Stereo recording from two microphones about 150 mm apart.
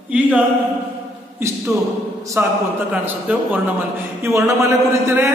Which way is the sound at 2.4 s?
15° right (ahead or behind).